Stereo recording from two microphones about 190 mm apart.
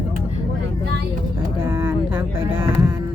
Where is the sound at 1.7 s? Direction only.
10° right (ahead or behind).